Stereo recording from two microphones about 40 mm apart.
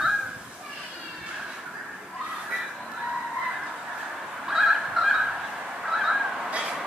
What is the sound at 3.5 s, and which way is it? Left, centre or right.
Fowl, centre.